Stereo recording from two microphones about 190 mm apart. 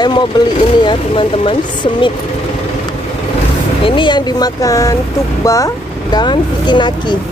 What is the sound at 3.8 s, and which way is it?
Speech, 25° left (ahead or behind).